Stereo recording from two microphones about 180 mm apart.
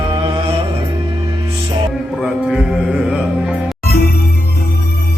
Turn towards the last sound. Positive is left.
turn(degrees=55)  # may be behind; listen again after turning